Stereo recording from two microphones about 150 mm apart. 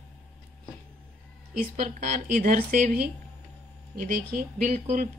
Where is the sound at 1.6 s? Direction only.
60° right (ahead or behind).